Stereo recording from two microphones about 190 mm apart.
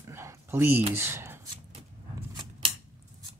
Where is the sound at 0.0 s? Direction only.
15° right (ahead or behind).